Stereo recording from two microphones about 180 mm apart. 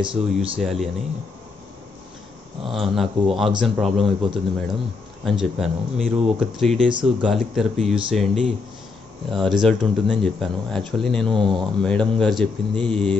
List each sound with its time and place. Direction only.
0.0 s speech: 30° right (ahead or behind)
0.6 s speech: centre (ahead or behind)
2.7 s speech: centre (ahead or behind)
11.3 s speech: 25° right (ahead or behind)
11.8 s speech: 5° left (ahead or behind)